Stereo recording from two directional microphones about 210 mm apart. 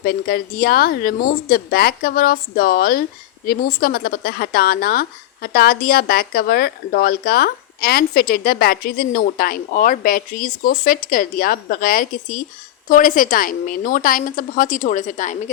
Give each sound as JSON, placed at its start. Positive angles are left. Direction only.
{"t": 0.0, "sound": "a woman's voice", "side_deg": 45}